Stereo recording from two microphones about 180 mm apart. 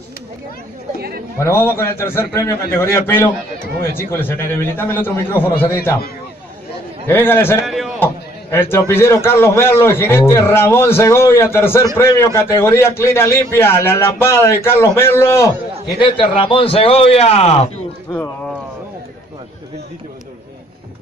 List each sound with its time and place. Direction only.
1.4 s a man's voice: 15° left (ahead or behind)
7.1 s a man's voice: 10° left (ahead or behind)
7.6 s a sound: centre (ahead or behind)
8.0 s a man's voice: 15° left (ahead or behind)
16.0 s a man's voice: 30° left (ahead or behind)